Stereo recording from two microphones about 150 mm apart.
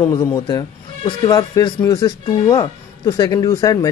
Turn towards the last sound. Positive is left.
turn(degrees=25)  # may be behind; listen again after turning